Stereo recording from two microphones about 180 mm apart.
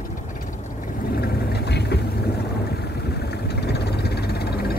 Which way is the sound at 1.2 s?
65° left (ahead or behind).